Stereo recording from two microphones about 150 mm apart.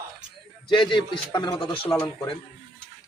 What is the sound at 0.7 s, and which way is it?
Speech, 30° left (ahead or behind).